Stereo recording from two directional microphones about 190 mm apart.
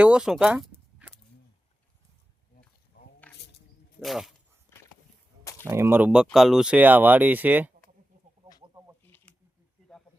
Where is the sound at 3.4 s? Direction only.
60° left (ahead or behind).